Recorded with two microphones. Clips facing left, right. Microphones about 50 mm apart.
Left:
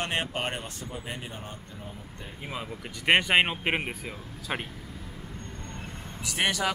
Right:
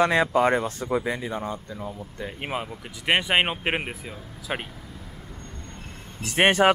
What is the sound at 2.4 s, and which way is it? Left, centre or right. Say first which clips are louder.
Speech: right 7 dB; right.